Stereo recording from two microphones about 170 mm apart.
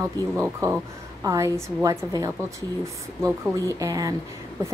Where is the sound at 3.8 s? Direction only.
20° right (ahead or behind).